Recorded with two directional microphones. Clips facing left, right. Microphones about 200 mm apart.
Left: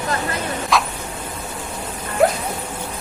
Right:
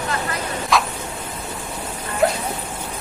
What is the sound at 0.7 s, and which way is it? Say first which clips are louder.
Vehicle: even; centre (ahead or behind).